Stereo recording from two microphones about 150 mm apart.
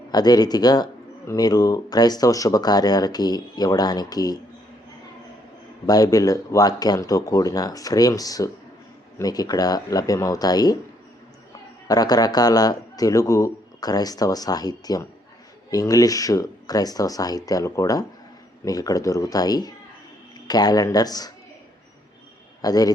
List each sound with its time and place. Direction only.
0.1 s a man's voice: 25° left (ahead or behind)
5.8 s a man's voice: 25° left (ahead or behind)
11.9 s a man's voice: 25° left (ahead or behind)
22.6 s a man's voice: 25° left (ahead or behind)